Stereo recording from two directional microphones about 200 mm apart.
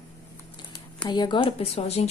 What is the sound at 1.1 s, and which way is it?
A woman's voice, 20° left (ahead or behind).